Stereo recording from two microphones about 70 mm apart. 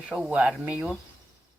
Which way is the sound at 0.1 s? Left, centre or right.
Centre.